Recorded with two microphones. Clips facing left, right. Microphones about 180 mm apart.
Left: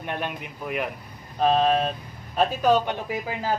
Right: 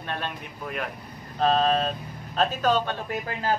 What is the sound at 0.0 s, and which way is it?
Speech, 15° left (ahead or behind).